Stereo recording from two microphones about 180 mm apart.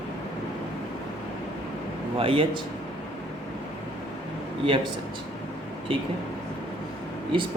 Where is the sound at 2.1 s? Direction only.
30° right (ahead or behind).